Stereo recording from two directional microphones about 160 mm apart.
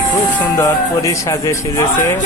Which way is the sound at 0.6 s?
20° left (ahead or behind).